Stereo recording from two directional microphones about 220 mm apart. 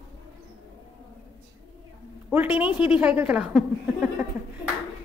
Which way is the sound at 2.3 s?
10° right (ahead or behind).